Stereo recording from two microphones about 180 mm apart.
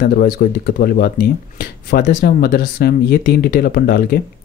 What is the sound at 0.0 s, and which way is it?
Speech, 60° left (ahead or behind).